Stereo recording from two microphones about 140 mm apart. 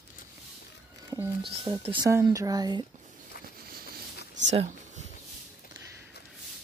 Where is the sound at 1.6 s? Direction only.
40° right (ahead or behind).